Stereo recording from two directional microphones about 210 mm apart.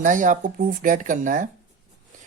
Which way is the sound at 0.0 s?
35° right (ahead or behind).